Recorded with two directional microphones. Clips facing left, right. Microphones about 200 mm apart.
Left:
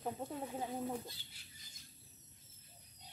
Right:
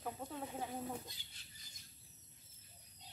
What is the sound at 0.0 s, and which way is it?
Speech, 25° left (ahead or behind).